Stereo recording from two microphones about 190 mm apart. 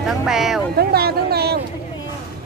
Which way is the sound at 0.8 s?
55° right (ahead or behind).